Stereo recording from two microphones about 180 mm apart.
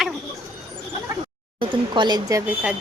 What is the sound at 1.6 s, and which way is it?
Speech, 25° right (ahead or behind).